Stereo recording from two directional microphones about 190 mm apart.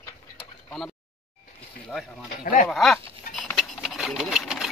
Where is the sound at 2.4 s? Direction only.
45° left (ahead or behind).